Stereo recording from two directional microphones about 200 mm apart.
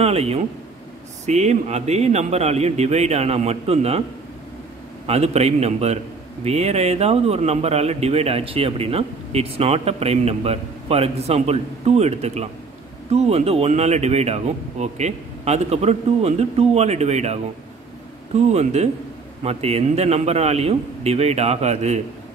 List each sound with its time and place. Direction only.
0.0 s speech: 30° right (ahead or behind)
5.0 s speech: 30° right (ahead or behind)